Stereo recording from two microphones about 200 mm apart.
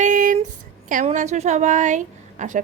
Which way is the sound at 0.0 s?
40° right (ahead or behind).